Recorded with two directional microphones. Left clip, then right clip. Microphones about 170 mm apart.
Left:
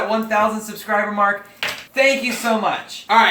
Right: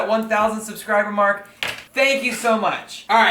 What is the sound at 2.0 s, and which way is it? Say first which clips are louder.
A man's voice: left 1 dB; 10° right (ahead or behind).